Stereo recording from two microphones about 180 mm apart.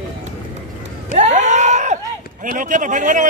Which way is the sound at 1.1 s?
40° right (ahead or behind).